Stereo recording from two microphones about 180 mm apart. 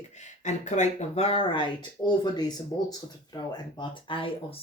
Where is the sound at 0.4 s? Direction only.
40° left (ahead or behind).